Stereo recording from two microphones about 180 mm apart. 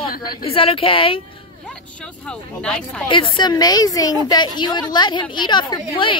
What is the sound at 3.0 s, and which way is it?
A woman's voice, 30° left (ahead or behind).